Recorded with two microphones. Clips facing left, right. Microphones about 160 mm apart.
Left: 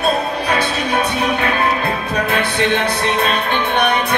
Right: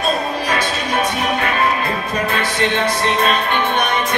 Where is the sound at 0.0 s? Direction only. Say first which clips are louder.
Left 2 dB; 60° left (ahead or behind).